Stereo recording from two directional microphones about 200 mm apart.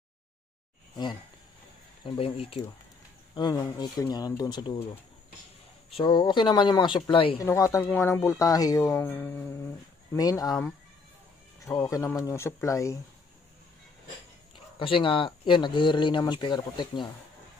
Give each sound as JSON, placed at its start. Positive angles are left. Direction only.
{"t": 2.0, "sound": "speech", "side_deg": 30}
{"t": 5.9, "sound": "speech", "side_deg": 25}
{"t": 7.4, "sound": "speech", "side_deg": 15}
{"t": 11.6, "sound": "speech", "side_deg": 15}
{"t": 14.8, "sound": "speech", "side_deg": 25}